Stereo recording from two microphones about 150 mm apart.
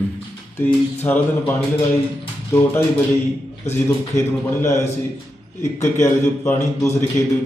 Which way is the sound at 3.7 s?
15° left (ahead or behind).